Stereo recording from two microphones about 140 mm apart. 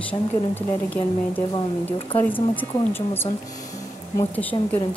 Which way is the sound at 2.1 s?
15° left (ahead or behind).